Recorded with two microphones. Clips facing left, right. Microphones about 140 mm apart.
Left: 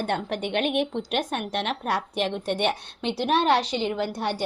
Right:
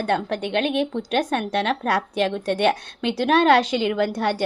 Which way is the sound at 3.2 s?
90° right.